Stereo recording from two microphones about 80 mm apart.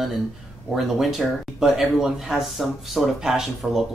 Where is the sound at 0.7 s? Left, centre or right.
Centre.